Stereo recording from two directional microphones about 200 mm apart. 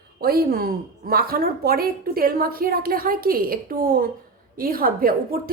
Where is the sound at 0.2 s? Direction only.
50° right (ahead or behind).